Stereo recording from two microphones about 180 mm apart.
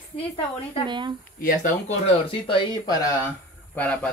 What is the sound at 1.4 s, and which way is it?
Speech, 45° left (ahead or behind).